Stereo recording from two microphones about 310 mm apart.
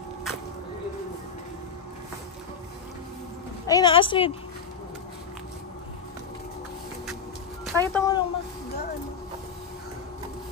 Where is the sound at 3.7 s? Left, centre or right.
Centre.